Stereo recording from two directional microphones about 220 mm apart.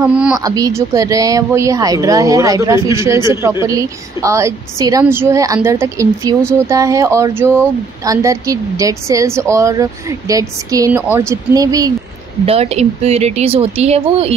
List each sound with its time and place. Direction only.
0.0 s speech: 5° right (ahead or behind)
0.4 s a woman's voice: 15° right (ahead or behind)
12.4 s speech: 30° right (ahead or behind)